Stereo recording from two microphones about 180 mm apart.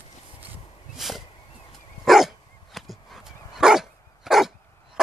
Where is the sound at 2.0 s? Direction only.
Centre (ahead or behind).